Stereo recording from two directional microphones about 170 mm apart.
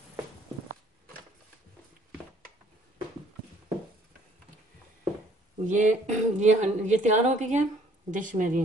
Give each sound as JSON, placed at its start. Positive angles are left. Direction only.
{"t": 5.7, "sound": "a woman's voice", "side_deg": -45}